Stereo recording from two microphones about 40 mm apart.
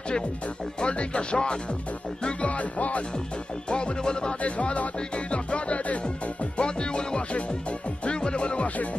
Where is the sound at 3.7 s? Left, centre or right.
Left.